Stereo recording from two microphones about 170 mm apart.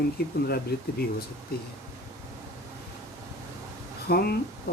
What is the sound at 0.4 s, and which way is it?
Speech, 65° left (ahead or behind).